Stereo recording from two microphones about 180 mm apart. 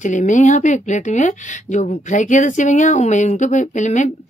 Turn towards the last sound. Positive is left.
turn(degrees=40)  # may be behind; listen again after turning